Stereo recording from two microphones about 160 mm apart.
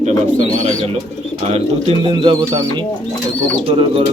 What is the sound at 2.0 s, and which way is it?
Speech, 30° right (ahead or behind).